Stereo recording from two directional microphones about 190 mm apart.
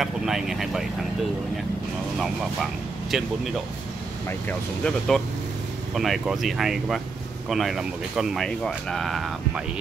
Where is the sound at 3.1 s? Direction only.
Centre (ahead or behind).